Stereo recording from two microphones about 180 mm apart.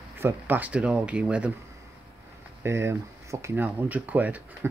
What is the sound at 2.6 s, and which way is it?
Speech, 15° right (ahead or behind).